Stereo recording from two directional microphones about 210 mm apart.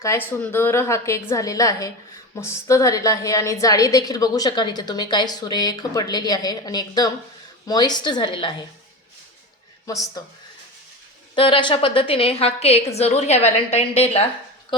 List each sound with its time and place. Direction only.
0.0 s a woman's voice: 10° left (ahead or behind)
11.3 s a woman's voice: 25° left (ahead or behind)